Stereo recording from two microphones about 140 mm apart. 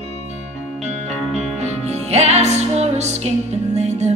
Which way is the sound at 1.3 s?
50° right (ahead or behind).